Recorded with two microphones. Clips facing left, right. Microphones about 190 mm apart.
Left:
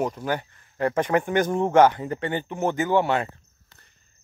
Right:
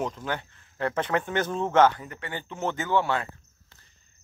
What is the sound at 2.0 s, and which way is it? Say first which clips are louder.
Speech: left 11 dB; 30° left (ahead or behind).